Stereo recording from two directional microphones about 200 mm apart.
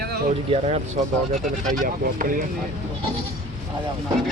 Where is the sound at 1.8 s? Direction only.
45° right (ahead or behind).